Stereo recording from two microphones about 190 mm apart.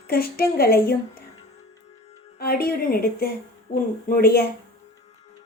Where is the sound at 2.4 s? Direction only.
55° left (ahead or behind).